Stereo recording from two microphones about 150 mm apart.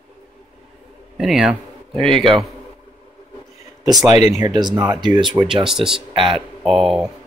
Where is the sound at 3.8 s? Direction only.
25° right (ahead or behind).